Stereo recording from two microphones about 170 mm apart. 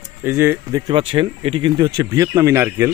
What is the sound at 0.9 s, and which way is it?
Speech, 30° right (ahead or behind).